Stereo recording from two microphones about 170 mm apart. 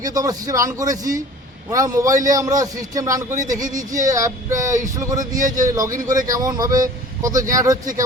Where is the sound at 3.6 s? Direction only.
50° right (ahead or behind).